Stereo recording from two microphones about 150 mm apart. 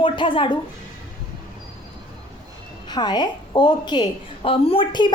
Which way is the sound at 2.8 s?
30° left (ahead or behind).